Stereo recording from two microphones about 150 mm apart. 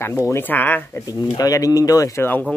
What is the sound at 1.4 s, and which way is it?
Speech, 25° left (ahead or behind).